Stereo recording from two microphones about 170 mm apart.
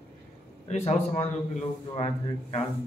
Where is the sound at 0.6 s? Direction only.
40° left (ahead or behind).